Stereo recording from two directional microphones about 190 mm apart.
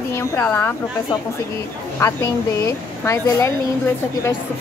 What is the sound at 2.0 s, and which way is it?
Speech, 15° left (ahead or behind).